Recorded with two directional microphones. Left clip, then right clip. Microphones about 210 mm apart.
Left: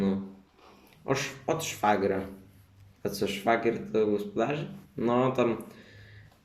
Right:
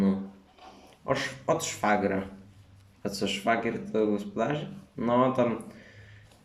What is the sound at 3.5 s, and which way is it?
Speech, 5° left (ahead or behind).